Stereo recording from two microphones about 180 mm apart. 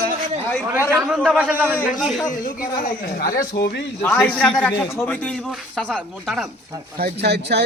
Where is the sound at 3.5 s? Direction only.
65° left (ahead or behind).